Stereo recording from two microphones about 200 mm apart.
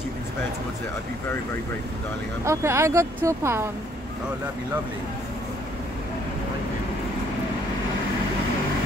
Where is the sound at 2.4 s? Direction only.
15° right (ahead or behind).